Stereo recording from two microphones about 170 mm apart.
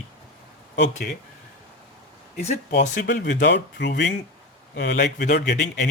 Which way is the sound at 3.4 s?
90° left.